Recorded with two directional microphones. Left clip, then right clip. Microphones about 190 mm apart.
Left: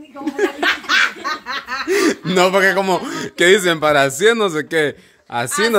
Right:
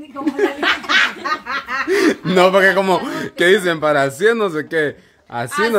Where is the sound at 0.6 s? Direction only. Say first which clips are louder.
Even; 55° left (ahead or behind).